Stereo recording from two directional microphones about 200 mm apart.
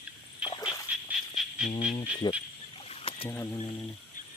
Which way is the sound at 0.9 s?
5° right (ahead or behind).